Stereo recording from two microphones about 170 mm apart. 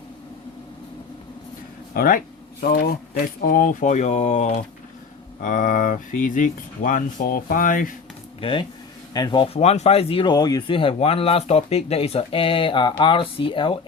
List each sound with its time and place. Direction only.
1.9 s a sound: 55° left (ahead or behind)
2.7 s speech: 70° left (ahead or behind); by 7.9 s 55° left (ahead or behind)
8.4 s speech: 30° left (ahead or behind)